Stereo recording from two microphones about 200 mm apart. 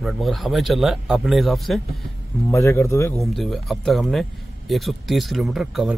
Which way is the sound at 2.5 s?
15° left (ahead or behind).